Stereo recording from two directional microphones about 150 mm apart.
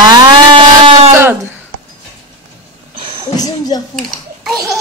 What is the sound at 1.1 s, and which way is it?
Speech, 15° right (ahead or behind).